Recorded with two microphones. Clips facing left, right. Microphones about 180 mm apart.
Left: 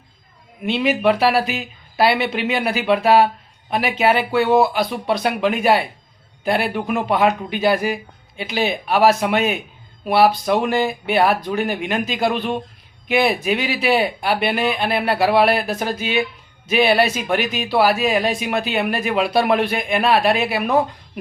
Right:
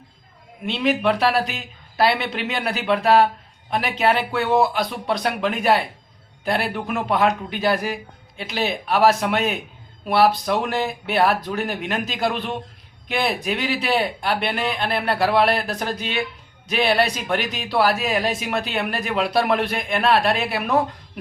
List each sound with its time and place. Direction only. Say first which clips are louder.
0.6 s speech: left 3 dB; 5° left (ahead or behind)